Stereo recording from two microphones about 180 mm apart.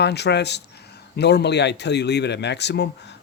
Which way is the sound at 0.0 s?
70° left (ahead or behind).